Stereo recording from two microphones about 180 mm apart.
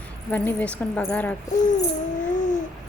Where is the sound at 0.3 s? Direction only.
10° left (ahead or behind).